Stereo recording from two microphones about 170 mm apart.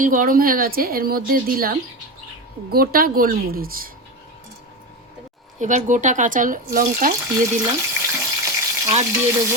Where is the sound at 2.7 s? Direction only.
60° right (ahead or behind).